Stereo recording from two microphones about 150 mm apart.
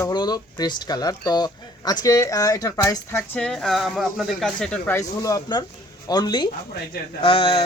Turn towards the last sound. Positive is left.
turn(degrees=35)  # may be behind; listen again after turning